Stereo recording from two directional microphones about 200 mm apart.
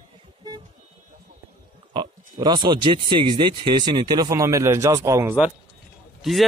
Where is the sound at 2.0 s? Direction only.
20° right (ahead or behind).